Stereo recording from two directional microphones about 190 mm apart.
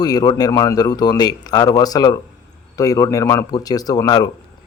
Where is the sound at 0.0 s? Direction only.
20° left (ahead or behind).